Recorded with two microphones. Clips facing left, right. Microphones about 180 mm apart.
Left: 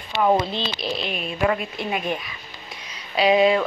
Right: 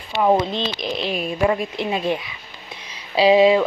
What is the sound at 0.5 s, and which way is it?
Speech, 20° right (ahead or behind).